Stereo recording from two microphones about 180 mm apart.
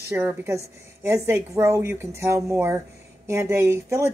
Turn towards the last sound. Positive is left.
turn(degrees=-15)  # may be behind; listen again after turning